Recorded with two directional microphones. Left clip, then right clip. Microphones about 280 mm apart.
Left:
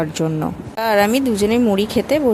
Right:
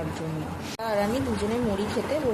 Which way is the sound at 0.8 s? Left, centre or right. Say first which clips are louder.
Left 11 dB; left.